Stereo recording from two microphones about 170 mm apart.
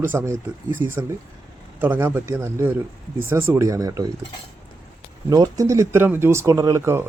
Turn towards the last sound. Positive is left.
turn(degrees=-15)  # may be behind; listen again after turning